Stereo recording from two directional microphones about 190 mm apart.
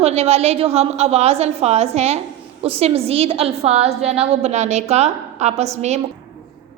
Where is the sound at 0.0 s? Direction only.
35° right (ahead or behind).